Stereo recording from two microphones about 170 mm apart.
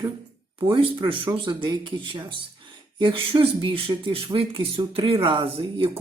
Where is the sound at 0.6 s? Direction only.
30° right (ahead or behind).